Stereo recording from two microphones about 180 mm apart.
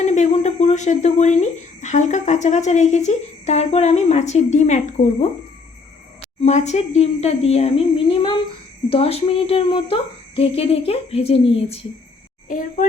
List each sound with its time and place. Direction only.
0.0 s speech: 40° left (ahead or behind)
6.4 s speech: 40° left (ahead or behind)
12.5 s a child's voice: 50° left (ahead or behind)